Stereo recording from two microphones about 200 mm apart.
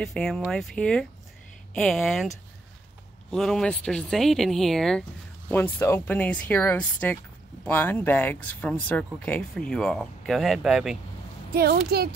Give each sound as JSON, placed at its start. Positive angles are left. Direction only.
{"t": 0.0, "sound": "speech", "side_deg": 0}
{"t": 11.5, "sound": "speech", "side_deg": -50}